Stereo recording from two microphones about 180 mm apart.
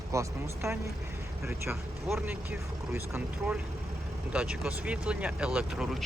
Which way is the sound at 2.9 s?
10° right (ahead or behind).